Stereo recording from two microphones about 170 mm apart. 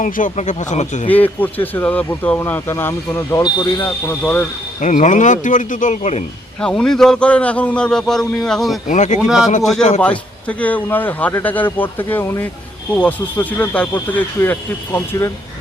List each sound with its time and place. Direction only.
0.0 s speech: 45° left (ahead or behind)
1.0 s a man's voice: 10° left (ahead or behind)
3.4 s speech: 25° left (ahead or behind)
3.8 s a man's voice: 15° left (ahead or behind)
4.8 s speech: 45° left (ahead or behind)
6.6 s a man's voice: 5° left (ahead or behind)
8.9 s speech: 45° left (ahead or behind)
9.2 s a man's voice: 5° right (ahead or behind)
10.0 s a man's voice: 5° left (ahead or behind)